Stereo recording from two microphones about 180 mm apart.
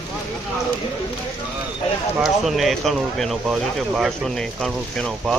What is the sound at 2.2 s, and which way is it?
Speech, centre (ahead or behind).